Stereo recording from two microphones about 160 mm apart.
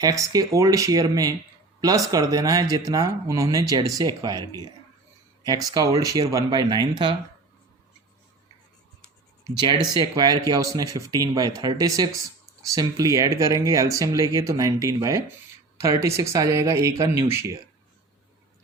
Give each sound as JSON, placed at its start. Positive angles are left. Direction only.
{"t": 0.0, "sound": "speech", "side_deg": -20}
{"t": 6.0, "sound": "speech", "side_deg": -20}
{"t": 9.6, "sound": "a woman's voice", "side_deg": -25}